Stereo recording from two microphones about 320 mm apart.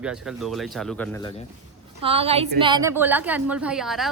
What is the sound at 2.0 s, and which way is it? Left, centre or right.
A woman's voice, centre.